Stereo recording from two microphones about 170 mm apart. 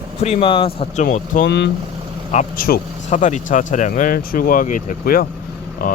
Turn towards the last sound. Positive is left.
turn(degrees=55)  # may be behind; listen again after turning